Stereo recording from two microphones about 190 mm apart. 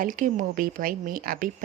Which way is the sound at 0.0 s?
45° right (ahead or behind).